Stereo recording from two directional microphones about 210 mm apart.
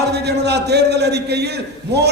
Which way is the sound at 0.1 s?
50° right (ahead or behind).